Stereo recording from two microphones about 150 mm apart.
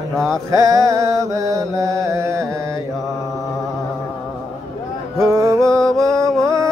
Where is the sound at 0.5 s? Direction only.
25° right (ahead or behind).